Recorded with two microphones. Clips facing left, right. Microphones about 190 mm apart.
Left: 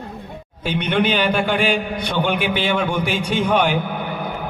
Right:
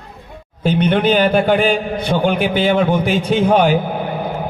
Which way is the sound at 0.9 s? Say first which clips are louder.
Right 3 dB; 45° right (ahead or behind).